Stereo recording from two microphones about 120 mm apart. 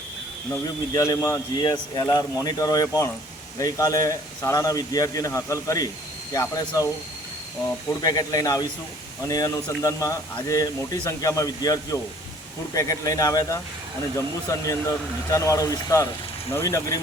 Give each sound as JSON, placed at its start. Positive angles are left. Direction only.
{"t": 0.5, "sound": "a man's voice", "side_deg": 25}
{"t": 8.0, "sound": "a man's voice", "side_deg": 30}
{"t": 14.6, "sound": "a man's voice", "side_deg": 30}